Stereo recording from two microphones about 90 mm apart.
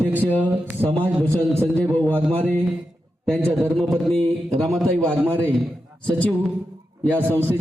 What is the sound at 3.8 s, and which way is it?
Music, 5° left (ahead or behind).